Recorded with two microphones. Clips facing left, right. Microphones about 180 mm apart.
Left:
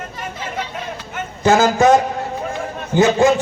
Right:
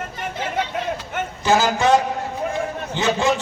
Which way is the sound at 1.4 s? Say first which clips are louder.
Left 5 dB; 45° left (ahead or behind).